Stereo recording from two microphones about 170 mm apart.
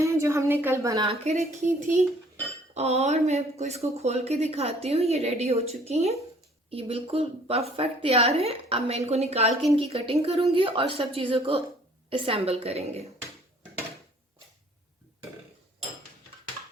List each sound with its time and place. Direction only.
0.0 s a woman's voice: 15° right (ahead or behind)
1.0 s speech: 40° right (ahead or behind)
2.7 s speech: 40° right (ahead or behind)